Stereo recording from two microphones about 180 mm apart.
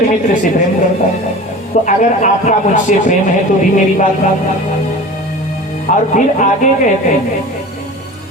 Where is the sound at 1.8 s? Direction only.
45° left (ahead or behind).